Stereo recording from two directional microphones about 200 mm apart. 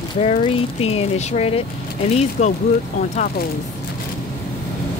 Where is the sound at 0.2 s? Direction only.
30° left (ahead or behind).